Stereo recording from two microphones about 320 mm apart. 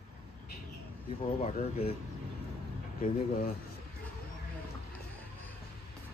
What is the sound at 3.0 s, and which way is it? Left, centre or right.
Speech, left.